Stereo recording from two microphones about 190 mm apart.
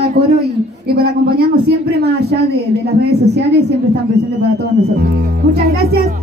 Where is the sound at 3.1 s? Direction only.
60° right (ahead or behind).